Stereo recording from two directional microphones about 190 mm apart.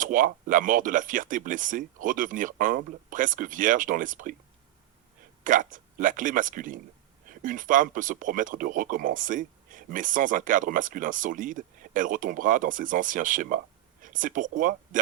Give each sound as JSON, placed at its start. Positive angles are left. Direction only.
{"t": 0.0, "sound": "speech", "side_deg": -45}
{"t": 5.4, "sound": "a sound", "side_deg": -45}
{"t": 5.7, "sound": "speech", "side_deg": -45}